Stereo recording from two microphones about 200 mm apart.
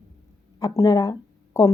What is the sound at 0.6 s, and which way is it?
A woman's voice, 15° left (ahead or behind).